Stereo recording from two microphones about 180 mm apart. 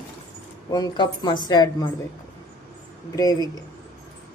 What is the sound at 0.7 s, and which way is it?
A woman's voice, 25° left (ahead or behind).